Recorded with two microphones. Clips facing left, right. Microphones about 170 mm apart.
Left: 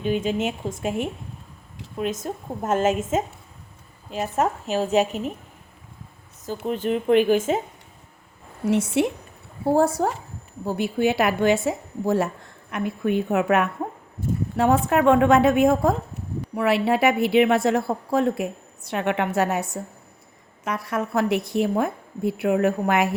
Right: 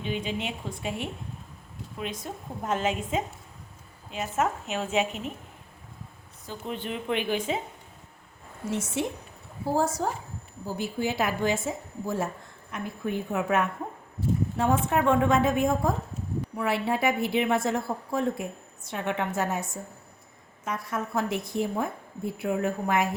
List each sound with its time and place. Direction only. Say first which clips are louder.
0.0 s a woman's voice: left 8 dB; 45° left (ahead or behind)
6.7 s a woman's voice: left 10 dB; 45° left (ahead or behind)
8.6 s a woman's voice: left 9 dB; 70° left (ahead or behind)